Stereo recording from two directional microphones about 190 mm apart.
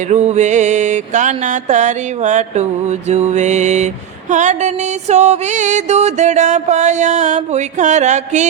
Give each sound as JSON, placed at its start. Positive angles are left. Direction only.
{"t": 0.1, "sound": "music", "side_deg": -35}